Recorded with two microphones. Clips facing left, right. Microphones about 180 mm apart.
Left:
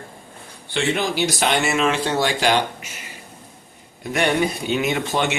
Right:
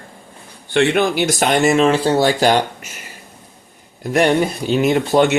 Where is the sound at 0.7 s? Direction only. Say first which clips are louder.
Right 7 dB; 60° right (ahead or behind); by 2.9 s 40° right (ahead or behind).